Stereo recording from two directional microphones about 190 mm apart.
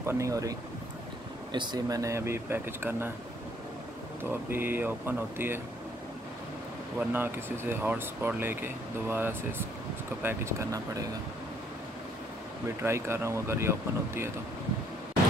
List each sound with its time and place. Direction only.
0.0 s speech: 15° right (ahead or behind)
4.2 s speech: 10° right (ahead or behind)
7.0 s speech: 10° right (ahead or behind)
12.8 s speech: 15° right (ahead or behind)